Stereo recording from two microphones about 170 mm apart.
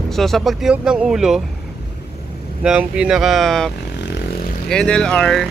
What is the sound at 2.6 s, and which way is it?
Speech, 5° right (ahead or behind).